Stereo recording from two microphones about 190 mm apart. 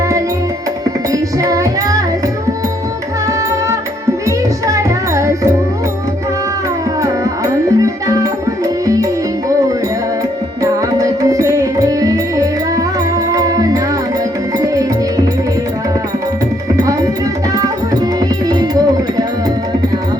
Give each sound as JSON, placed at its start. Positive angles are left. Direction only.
{"t": 1.1, "sound": "music", "side_deg": -15}
{"t": 4.3, "sound": "music", "side_deg": -15}
{"t": 7.0, "sound": "music", "side_deg": -15}
{"t": 10.6, "sound": "music", "side_deg": -20}
{"t": 13.3, "sound": "music", "side_deg": -20}
{"t": 18.4, "sound": "music", "side_deg": -20}